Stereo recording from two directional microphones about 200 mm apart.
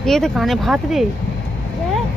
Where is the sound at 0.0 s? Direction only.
Centre (ahead or behind).